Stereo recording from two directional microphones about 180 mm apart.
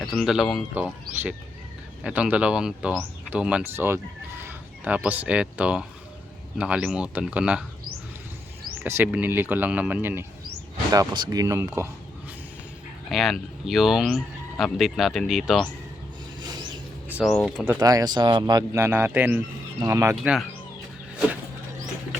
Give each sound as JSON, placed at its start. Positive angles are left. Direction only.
{"t": 0.0, "sound": "speech", "side_deg": 0}
{"t": 9.0, "sound": "speech", "side_deg": -10}
{"t": 13.1, "sound": "speech", "side_deg": 0}
{"t": 17.2, "sound": "speech", "side_deg": 0}
{"t": 17.7, "sound": "speech", "side_deg": -20}
{"t": 20.1, "sound": "speech", "side_deg": 0}